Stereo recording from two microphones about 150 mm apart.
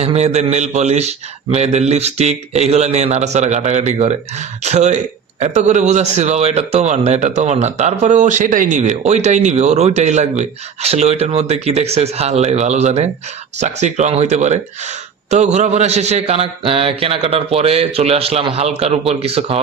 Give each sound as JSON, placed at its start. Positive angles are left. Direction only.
{"t": 0.0, "sound": "speech", "side_deg": -45}